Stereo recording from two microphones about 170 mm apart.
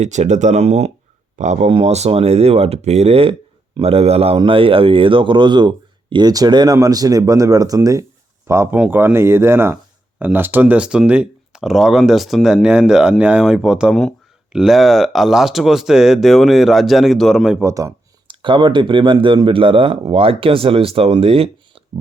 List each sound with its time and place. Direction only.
0.0 s speech: 45° right (ahead or behind); by 17.6 s centre (ahead or behind)
17.6 s speech: 15° right (ahead or behind)
18.3 s speech: 25° right (ahead or behind)